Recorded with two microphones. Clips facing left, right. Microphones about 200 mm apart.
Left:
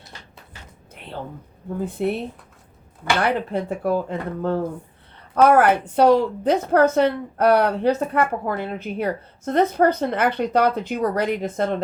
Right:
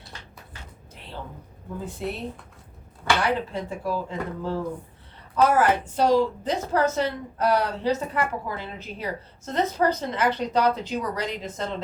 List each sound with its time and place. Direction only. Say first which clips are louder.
1.8 s a woman's voice: left 8 dB; 60° left (ahead or behind)
3.2 s a woman's voice: left 4 dB; 60° left (ahead or behind)